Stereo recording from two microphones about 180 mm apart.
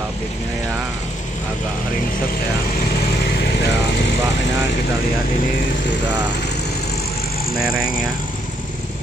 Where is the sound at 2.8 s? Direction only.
55° left (ahead or behind).